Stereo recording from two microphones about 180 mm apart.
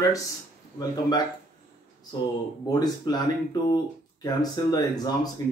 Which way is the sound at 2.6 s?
20° left (ahead or behind).